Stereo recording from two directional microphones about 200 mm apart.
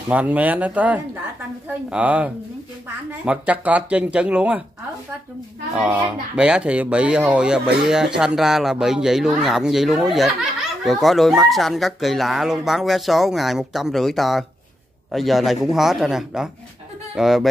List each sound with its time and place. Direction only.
0.1 s speech: 5° right (ahead or behind)
5.8 s speech: 5° right (ahead or behind)